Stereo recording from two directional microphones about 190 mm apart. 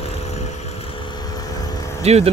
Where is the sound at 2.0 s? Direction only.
35° right (ahead or behind).